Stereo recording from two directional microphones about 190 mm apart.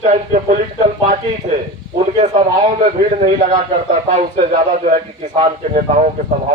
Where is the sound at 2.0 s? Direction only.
35° right (ahead or behind).